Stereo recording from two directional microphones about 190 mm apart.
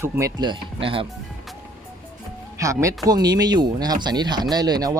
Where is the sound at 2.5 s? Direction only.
15° right (ahead or behind).